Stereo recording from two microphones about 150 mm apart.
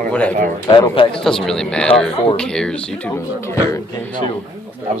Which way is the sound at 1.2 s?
5° left (ahead or behind).